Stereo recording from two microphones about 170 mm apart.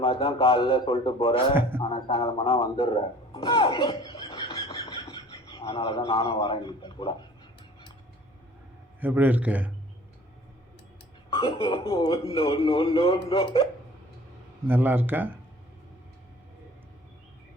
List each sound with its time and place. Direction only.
0.0 s a man's voice: 30° left (ahead or behind)
9.0 s a man's voice: 10° right (ahead or behind)
11.3 s a man's voice: 30° left (ahead or behind)
14.7 s a man's voice: 10° right (ahead or behind)